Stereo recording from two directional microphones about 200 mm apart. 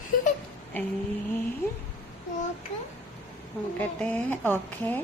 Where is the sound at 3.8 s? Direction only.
5° left (ahead or behind).